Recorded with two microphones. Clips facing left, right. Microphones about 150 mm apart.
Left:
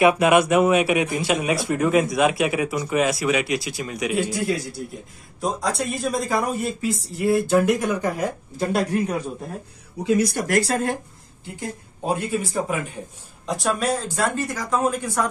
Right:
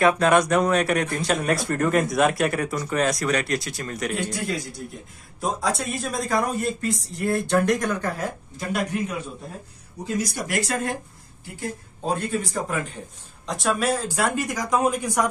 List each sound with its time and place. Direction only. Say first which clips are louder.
0.0 s speech: left 2 dB; 10° left (ahead or behind)
8.5 s speech: left 5 dB; 35° left (ahead or behind)
10.0 s speech: left 7 dB; 65° left (ahead or behind)
10.5 s speech: left 3 dB; 35° left (ahead or behind)
12.1 s a man's voice: left 1 dB; 10° left (ahead or behind)
14.0 s speech: even; 10° right (ahead or behind)